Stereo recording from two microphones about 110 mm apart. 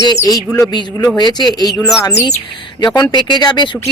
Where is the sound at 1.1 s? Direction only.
40° left (ahead or behind).